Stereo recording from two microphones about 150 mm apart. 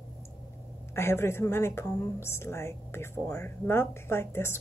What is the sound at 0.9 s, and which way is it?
A woman's voice, 15° left (ahead or behind).